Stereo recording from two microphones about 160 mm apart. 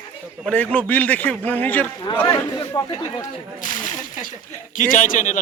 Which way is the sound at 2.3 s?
25° left (ahead or behind).